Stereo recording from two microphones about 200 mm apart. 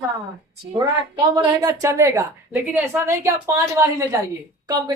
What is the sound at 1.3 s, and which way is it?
A woman's voice, 15° right (ahead or behind).